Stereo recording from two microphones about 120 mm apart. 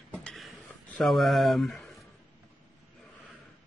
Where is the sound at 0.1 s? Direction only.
5° left (ahead or behind).